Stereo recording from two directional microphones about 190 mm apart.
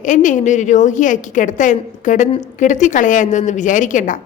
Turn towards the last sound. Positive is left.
turn(degrees=40)  # may be behind; listen again after turning